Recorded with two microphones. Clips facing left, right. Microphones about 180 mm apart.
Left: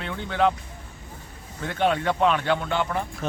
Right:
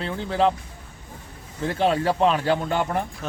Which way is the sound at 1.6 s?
30° right (ahead or behind).